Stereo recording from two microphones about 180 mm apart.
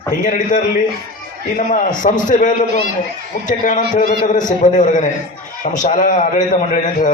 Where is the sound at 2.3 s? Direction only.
45° left (ahead or behind).